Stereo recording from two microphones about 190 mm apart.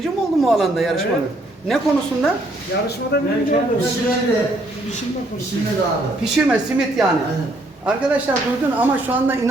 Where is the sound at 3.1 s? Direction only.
60° left (ahead or behind).